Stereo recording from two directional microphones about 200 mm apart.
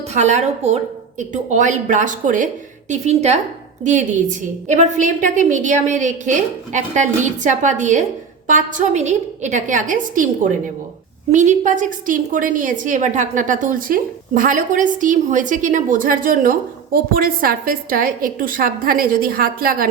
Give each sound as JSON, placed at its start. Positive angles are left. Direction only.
{"t": 0.1, "sound": "a woman's voice", "side_deg": -35}